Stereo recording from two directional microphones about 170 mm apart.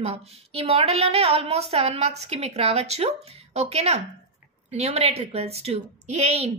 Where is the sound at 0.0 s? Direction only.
40° right (ahead or behind).